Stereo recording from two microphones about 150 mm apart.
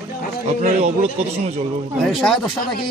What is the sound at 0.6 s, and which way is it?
Speech, 50° right (ahead or behind).